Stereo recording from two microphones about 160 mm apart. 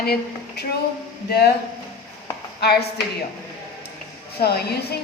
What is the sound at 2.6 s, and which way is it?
Speech, 90° left.